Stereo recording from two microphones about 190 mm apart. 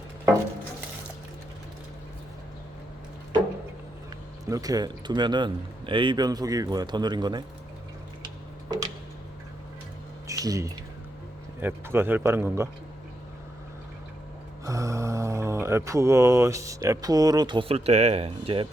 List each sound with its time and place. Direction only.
4.4 s speech: 20° right (ahead or behind)
10.2 s a sound: 20° right (ahead or behind)
11.6 s speech: 10° right (ahead or behind)
14.6 s mantra: 15° right (ahead or behind)